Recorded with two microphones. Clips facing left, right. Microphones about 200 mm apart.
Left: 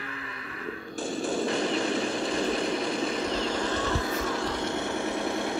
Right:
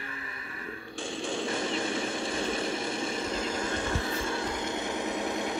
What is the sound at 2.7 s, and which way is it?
Vehicle, 25° right (ahead or behind).